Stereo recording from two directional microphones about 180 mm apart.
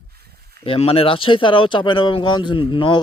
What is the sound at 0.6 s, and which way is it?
Speech, 30° left (ahead or behind).